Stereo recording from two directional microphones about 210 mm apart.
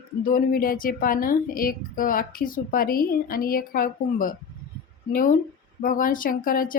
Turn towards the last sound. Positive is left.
turn(degrees=40)  # may be behind; listen again after turning